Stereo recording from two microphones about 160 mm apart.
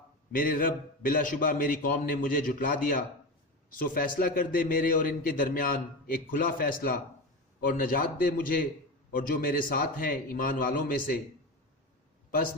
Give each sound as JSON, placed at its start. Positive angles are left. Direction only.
{"t": 0.3, "sound": "a man's voice", "side_deg": 60}